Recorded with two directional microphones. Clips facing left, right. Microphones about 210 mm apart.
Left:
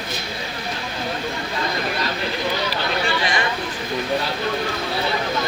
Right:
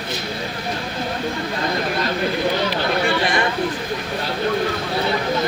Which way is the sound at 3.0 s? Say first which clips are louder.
Right 3 dB; 50° right (ahead or behind).